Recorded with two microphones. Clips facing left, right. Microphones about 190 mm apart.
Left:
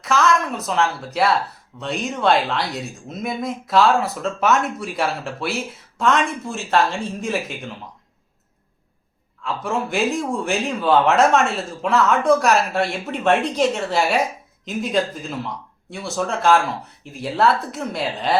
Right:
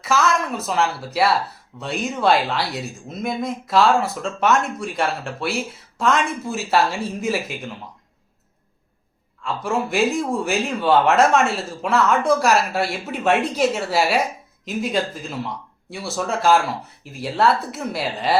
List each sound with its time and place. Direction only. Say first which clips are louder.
0.0 s a woman's voice: left 1 dB; centre (ahead or behind)
9.4 s a woman's voice: right 1 dB; centre (ahead or behind)